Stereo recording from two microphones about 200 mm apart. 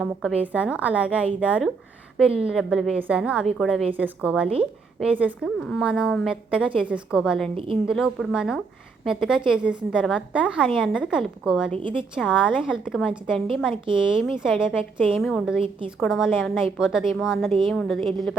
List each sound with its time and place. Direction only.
0.0 s a woman's voice: centre (ahead or behind)
5.5 s a woman's voice: 5° left (ahead or behind)
11.8 s speech: 25° right (ahead or behind)
12.1 s a woman's voice: 5° right (ahead or behind)